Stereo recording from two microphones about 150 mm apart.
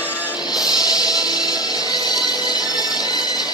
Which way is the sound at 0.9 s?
25° left (ahead or behind).